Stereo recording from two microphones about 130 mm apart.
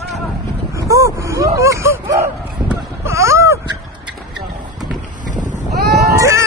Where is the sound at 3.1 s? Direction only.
20° right (ahead or behind).